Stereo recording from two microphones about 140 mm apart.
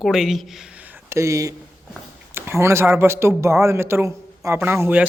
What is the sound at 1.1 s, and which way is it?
A man's voice, 20° right (ahead or behind).